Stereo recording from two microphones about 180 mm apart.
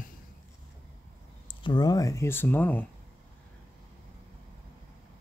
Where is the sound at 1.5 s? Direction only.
25° left (ahead or behind); by 2.9 s 10° left (ahead or behind).